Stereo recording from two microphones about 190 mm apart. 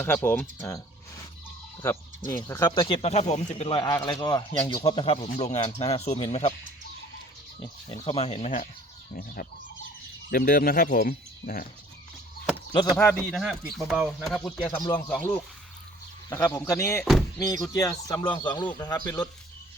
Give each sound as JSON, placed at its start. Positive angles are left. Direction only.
{"t": 0.0, "sound": "speech", "side_deg": 10}
{"t": 1.8, "sound": "speech", "side_deg": 15}
{"t": 7.6, "sound": "speech", "side_deg": 25}
{"t": 9.1, "sound": "speech", "side_deg": 50}
{"t": 12.7, "sound": "speech", "side_deg": 15}
{"t": 13.3, "sound": "speech", "side_deg": 0}
{"t": 16.3, "sound": "speech", "side_deg": 15}
{"t": 17.0, "sound": "speech", "side_deg": 0}
{"t": 17.4, "sound": "speech", "side_deg": 20}